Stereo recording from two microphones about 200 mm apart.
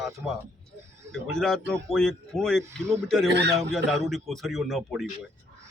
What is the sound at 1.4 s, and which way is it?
A man's voice, centre (ahead or behind).